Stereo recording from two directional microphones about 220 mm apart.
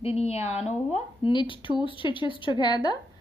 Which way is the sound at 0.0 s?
30° left (ahead or behind).